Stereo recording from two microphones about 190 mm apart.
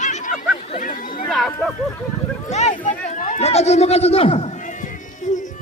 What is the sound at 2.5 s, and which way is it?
Speech, 35° left (ahead or behind).